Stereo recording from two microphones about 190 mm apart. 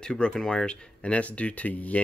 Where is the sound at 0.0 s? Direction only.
5° left (ahead or behind).